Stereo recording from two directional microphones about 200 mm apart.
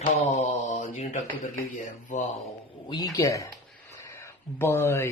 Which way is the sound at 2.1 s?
40° left (ahead or behind).